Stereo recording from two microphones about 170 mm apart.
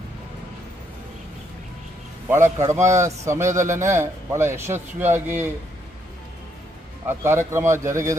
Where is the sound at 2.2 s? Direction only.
15° right (ahead or behind).